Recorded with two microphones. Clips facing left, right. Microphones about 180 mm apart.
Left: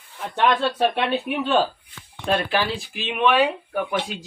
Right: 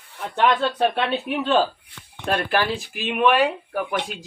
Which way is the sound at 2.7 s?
5° right (ahead or behind).